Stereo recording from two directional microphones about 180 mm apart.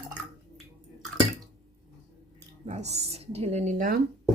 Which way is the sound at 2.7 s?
40° right (ahead or behind).